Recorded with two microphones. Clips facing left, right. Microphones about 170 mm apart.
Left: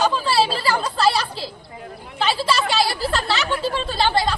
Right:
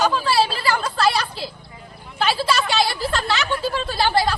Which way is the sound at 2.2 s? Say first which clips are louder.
Even; centre (ahead or behind).